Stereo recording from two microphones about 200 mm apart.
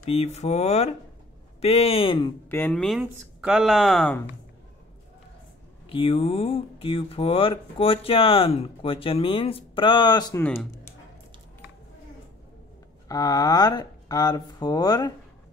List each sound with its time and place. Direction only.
0.1 s speech: 30° left (ahead or behind)
2.5 s speech: 5° left (ahead or behind)
5.9 s speech: 25° left (ahead or behind)
10.4 s speech: 10° left (ahead or behind)
13.1 s speech: 20° left (ahead or behind)